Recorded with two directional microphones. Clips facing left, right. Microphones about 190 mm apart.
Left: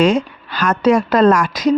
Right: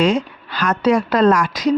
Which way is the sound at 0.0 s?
50° left (ahead or behind).